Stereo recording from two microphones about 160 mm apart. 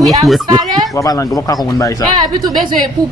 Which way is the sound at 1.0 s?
20° left (ahead or behind).